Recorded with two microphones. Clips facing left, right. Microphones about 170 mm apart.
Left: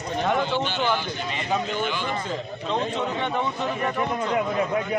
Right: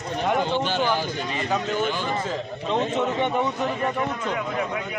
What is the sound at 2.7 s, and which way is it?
Speech, 20° right (ahead or behind).